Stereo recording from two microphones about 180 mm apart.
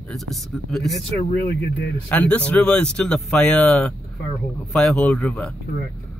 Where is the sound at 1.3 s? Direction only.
65° left (ahead or behind); by 1.9 s 80° left.